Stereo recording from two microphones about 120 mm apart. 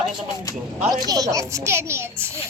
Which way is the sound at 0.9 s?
35° right (ahead or behind).